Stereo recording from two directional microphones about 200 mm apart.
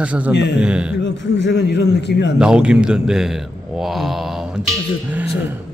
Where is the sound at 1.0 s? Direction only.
60° left (ahead or behind).